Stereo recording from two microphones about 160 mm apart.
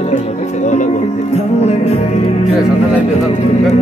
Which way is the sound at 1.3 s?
40° left (ahead or behind).